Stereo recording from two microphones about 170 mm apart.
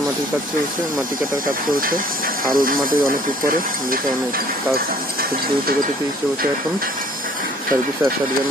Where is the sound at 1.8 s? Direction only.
55° right (ahead or behind).